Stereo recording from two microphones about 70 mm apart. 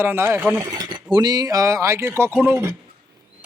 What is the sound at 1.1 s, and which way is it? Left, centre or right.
Speech, right.